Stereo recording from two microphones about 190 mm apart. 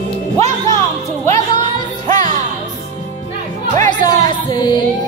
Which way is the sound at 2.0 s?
40° right (ahead or behind).